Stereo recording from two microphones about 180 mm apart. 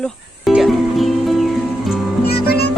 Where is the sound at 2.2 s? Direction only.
60° left (ahead or behind).